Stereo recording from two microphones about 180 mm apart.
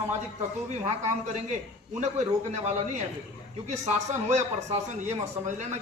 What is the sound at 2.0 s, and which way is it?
Speech, 40° right (ahead or behind).